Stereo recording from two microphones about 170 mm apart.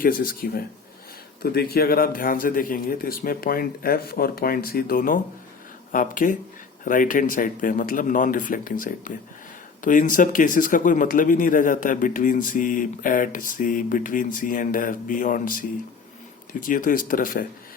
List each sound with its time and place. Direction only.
0.0 s a man's voice: 55° left (ahead or behind)